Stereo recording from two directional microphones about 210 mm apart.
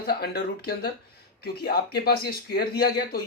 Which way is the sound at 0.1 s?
45° left (ahead or behind).